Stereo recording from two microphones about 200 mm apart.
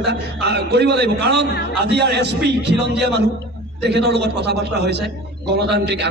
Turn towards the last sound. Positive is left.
turn(degrees=-55)  # may be behind; listen again after turning